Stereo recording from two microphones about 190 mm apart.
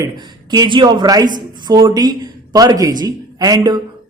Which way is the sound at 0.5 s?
25° right (ahead or behind).